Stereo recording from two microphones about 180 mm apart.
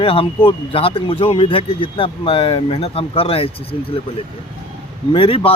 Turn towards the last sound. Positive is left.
turn(degrees=30)  # may be behind; listen again after turning